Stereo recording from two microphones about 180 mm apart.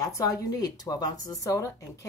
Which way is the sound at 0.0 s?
20° left (ahead or behind).